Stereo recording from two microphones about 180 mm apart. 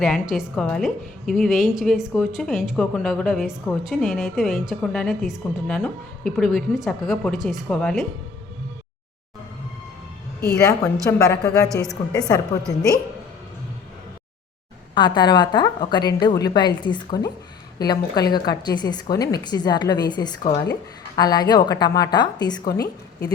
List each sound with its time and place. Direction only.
0.0 s a woman's voice: centre (ahead or behind)
11.2 s a woman's voice: 15° left (ahead or behind)
14.9 s a woman's voice: 25° left (ahead or behind)
22.6 s a woman's voice: 55° left (ahead or behind)